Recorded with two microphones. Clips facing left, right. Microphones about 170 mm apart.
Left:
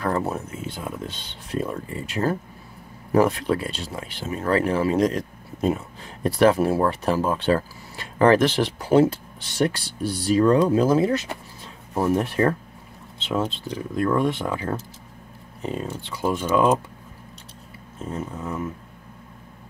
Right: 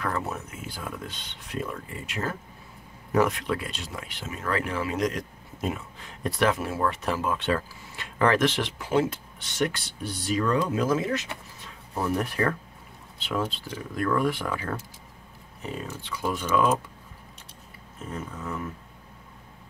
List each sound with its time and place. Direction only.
0.0 s speech: 35° left (ahead or behind)
18.1 s speech: 25° left (ahead or behind)